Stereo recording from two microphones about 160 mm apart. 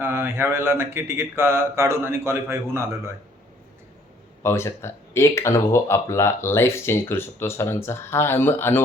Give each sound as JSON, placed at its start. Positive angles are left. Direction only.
{"t": 0.0, "sound": "mantra", "side_deg": -15}
{"t": 4.4, "sound": "speech", "side_deg": 15}